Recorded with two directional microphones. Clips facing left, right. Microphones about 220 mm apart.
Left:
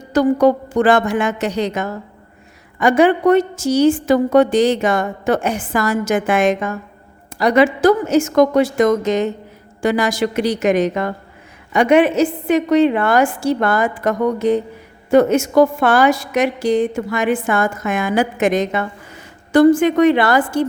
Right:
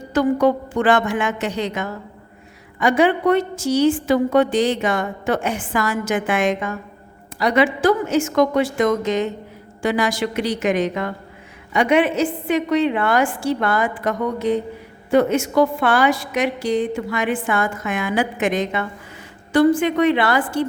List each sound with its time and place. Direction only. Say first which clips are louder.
0.1 s a woman's voice: left 3 dB; 40° left (ahead or behind)